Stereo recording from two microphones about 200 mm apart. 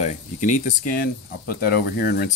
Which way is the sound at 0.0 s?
40° left (ahead or behind).